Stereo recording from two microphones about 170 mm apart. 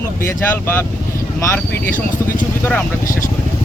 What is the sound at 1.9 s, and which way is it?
Speech, 50° left (ahead or behind).